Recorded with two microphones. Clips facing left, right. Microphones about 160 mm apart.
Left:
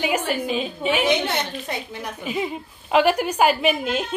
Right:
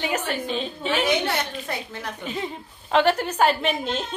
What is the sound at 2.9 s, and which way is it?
A woman's voice, 10° left (ahead or behind).